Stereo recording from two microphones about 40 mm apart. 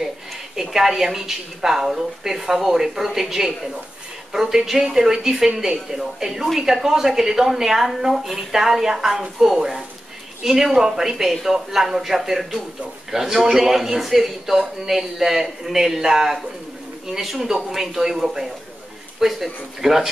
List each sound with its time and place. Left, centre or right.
0.6 s speech: centre